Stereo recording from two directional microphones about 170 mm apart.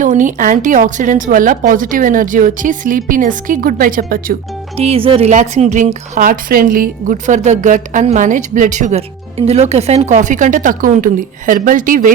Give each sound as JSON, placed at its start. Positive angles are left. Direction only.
{"t": 0.0, "sound": "a woman's voice", "side_deg": -50}
{"t": 4.8, "sound": "a woman's voice", "side_deg": -35}